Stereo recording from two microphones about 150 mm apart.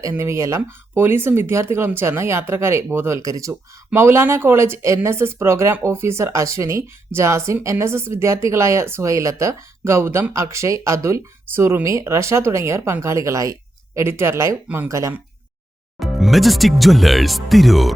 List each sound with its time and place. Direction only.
0.0 s speech: 20° right (ahead or behind)
16.0 s speech: centre (ahead or behind)